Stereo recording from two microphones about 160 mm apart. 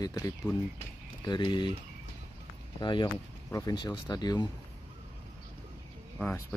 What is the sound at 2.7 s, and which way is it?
Speech, 30° left (ahead or behind).